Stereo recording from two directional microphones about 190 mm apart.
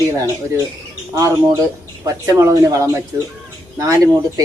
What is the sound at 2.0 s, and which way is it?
Speech, 15° right (ahead or behind).